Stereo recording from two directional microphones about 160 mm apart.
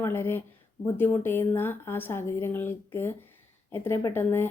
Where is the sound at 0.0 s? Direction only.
15° left (ahead or behind).